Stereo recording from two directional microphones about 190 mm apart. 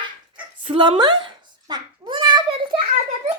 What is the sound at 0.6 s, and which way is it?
Babbling, 25° right (ahead or behind).